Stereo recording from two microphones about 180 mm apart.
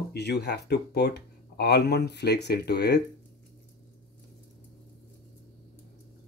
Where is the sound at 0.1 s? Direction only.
65° left (ahead or behind).